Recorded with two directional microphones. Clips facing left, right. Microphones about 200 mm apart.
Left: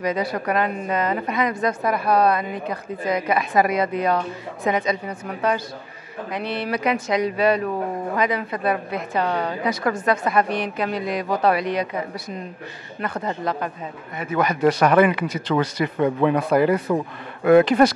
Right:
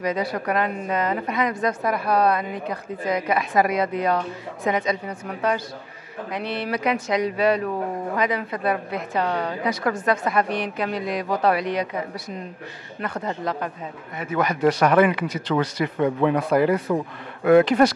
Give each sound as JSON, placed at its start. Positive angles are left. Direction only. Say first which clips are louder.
{"t": 0.0, "sound": "a woman's voice", "louder": "left 1 dB", "side_deg": 15}
{"t": 11.2, "sound": "a woman's voice", "louder": "left 1 dB", "side_deg": 20}